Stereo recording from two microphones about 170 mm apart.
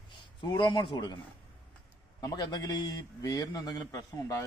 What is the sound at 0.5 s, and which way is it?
Speech, 25° left (ahead or behind).